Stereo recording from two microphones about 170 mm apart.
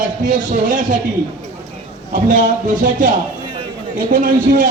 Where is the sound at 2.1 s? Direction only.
50° right (ahead or behind).